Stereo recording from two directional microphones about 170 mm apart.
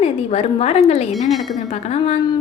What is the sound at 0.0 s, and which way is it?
A woman's voice, 35° left (ahead or behind).